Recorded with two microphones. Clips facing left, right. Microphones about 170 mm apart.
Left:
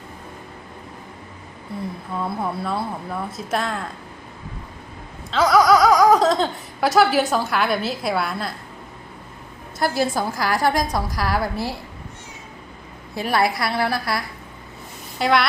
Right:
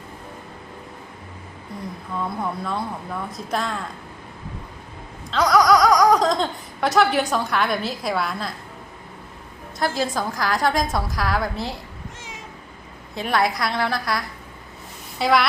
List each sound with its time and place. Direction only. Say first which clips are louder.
2.2 s a woman's voice: left 2 dB; 5° left (ahead or behind)
5.3 s speech: left 1 dB; centre (ahead or behind)
9.7 s a woman's voice: left 2 dB; 5° left (ahead or behind)
13.1 s a woman's voice: left 1 dB; 5° left (ahead or behind)